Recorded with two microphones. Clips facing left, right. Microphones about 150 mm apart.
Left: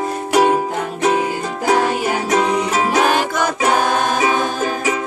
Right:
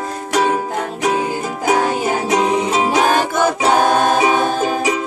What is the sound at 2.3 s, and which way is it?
Music, 20° right (ahead or behind).